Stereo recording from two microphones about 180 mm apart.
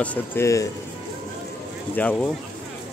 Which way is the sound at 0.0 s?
10° left (ahead or behind).